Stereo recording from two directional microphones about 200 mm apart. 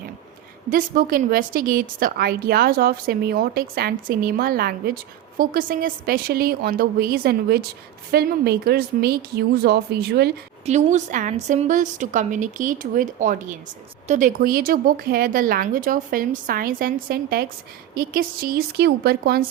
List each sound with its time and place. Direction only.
0.7 s a woman's voice: 45° right (ahead or behind)
10.7 s a woman's voice: 35° right (ahead or behind)